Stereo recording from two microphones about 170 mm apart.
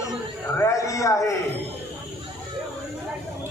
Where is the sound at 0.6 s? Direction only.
20° left (ahead or behind).